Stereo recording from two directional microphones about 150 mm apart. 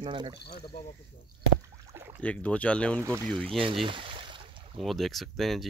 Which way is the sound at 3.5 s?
35° right (ahead or behind).